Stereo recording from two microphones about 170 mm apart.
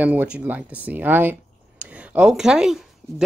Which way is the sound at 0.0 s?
10° right (ahead or behind).